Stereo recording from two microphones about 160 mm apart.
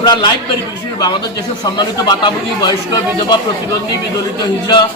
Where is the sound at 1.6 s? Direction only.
25° left (ahead or behind).